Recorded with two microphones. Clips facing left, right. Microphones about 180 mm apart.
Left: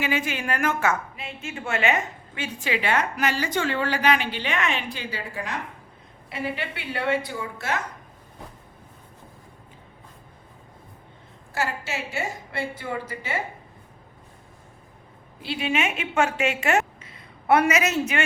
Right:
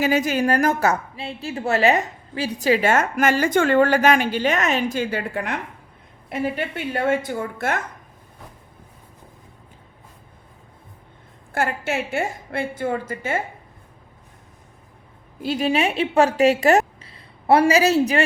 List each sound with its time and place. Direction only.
0.0 s a woman's voice: 40° right (ahead or behind); by 5.5 s 60° right (ahead or behind)
6.2 s a woman's voice: 45° right (ahead or behind)
11.5 s a woman's voice: 55° right (ahead or behind)
15.4 s a woman's voice: 40° right (ahead or behind)